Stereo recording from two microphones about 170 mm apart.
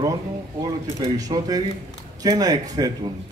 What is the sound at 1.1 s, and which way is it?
Speech, 20° right (ahead or behind).